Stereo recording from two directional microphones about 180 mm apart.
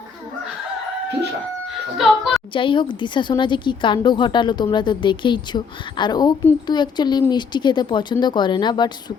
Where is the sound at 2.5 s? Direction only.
25° left (ahead or behind).